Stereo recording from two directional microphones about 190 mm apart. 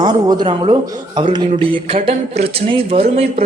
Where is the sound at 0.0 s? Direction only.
20° right (ahead or behind).